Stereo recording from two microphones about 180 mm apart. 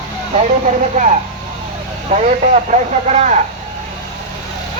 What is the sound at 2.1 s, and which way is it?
Radio, 40° right (ahead or behind).